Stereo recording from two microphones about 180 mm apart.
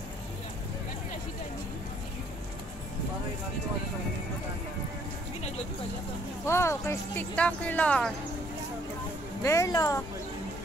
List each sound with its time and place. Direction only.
6.4 s speech: 15° left (ahead or behind)
9.4 s speech: 15° left (ahead or behind)